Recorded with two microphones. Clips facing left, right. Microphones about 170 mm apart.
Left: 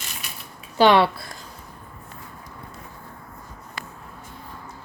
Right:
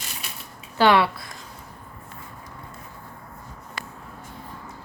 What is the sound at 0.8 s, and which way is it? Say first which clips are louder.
Speech: left 2 dB; 25° left (ahead or behind).